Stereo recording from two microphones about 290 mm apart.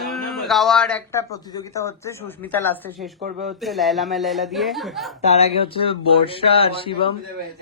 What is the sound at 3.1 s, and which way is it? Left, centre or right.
Speech, right.